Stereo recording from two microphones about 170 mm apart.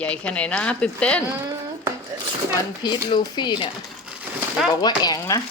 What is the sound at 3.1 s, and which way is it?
Speech, 25° left (ahead or behind).